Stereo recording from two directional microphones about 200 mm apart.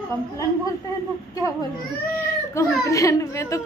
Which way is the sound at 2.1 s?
15° left (ahead or behind).